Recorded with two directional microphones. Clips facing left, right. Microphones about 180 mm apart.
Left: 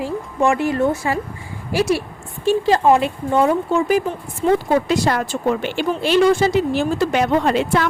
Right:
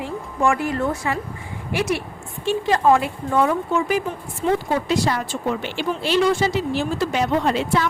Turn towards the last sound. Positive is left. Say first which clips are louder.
# left 3 dB
turn(degrees=60)  # may be behind; listen again after turning